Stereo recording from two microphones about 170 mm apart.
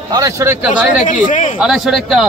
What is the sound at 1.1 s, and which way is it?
Speech, 50° left (ahead or behind).